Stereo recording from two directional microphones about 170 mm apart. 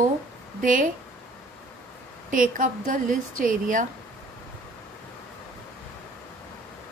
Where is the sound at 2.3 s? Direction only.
50° right (ahead or behind).